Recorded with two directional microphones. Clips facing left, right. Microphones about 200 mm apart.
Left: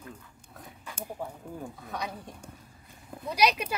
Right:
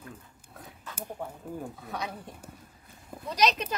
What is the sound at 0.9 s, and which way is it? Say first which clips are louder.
Speech: even; 10° left (ahead or behind).